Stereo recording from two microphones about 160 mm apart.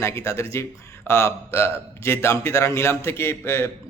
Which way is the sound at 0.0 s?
15° left (ahead or behind).